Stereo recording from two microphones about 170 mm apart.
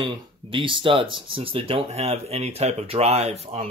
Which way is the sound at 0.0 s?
30° right (ahead or behind).